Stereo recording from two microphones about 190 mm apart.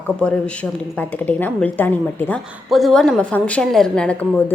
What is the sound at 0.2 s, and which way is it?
A woman's voice, 5° left (ahead or behind).